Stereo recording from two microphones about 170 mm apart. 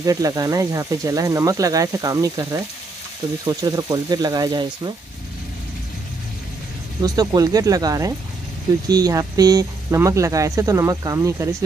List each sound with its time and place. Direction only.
0.0 s speech: 20° right (ahead or behind)
7.0 s speech: 20° right (ahead or behind)